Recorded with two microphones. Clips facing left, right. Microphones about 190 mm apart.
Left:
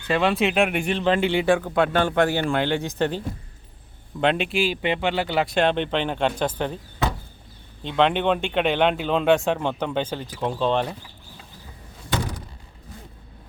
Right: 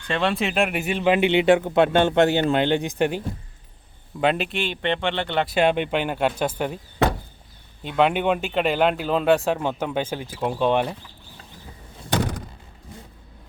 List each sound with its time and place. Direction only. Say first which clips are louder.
0.1 s speech: left 2 dB; centre (ahead or behind); by 3.2 s 15° right (ahead or behind)
4.2 s speech: left 1 dB; 5° right (ahead or behind)
5.5 s speech: right 2 dB; 10° right (ahead or behind)
7.9 s speech: even; 5° right (ahead or behind)